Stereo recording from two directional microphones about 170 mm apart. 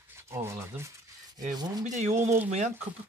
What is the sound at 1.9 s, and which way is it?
Speech, 40° right (ahead or behind).